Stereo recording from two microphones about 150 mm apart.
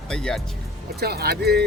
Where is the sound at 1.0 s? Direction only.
90° right.